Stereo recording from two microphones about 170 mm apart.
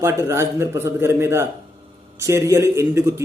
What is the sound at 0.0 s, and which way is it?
A man's voice, 15° right (ahead or behind).